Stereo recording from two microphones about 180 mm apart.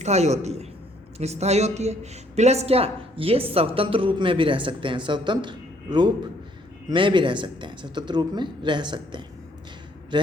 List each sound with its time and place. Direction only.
0.0 s a man's voice: 40° right (ahead or behind)